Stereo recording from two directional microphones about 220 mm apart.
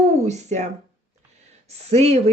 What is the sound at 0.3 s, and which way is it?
Speech, 30° right (ahead or behind).